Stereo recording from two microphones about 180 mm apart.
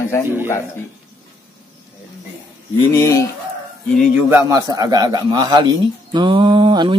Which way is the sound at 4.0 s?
10° right (ahead or behind).